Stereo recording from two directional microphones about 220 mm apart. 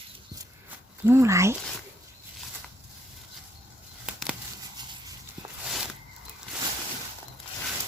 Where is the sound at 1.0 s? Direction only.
10° right (ahead or behind).